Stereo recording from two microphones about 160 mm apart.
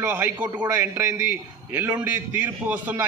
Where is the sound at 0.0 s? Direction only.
15° right (ahead or behind).